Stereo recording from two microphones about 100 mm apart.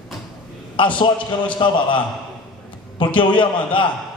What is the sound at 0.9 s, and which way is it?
A man's voice, 55° left (ahead or behind).